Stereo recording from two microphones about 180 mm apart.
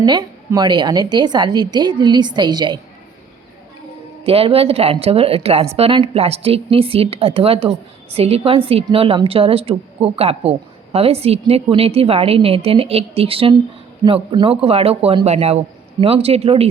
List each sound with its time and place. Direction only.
0.0 s a woman's voice: 25° right (ahead or behind)
4.2 s speech: 35° right (ahead or behind)